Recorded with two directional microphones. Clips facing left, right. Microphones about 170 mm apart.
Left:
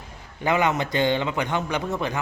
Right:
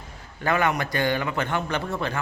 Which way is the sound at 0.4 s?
20° left (ahead or behind).